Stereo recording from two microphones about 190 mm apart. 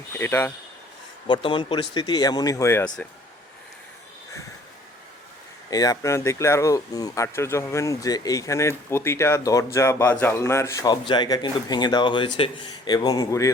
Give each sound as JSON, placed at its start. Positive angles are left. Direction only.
{"t": 0.1, "sound": "speech", "side_deg": 10}
{"t": 1.3, "sound": "speech", "side_deg": 25}
{"t": 5.7, "sound": "speech", "side_deg": 20}